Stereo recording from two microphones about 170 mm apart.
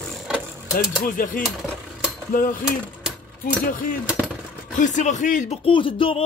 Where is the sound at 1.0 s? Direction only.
50° left (ahead or behind).